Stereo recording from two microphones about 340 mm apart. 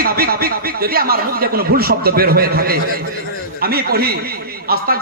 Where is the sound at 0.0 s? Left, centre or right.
Right.